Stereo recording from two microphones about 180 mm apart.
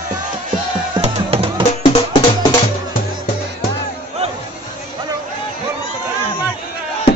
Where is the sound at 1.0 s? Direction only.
30° right (ahead or behind).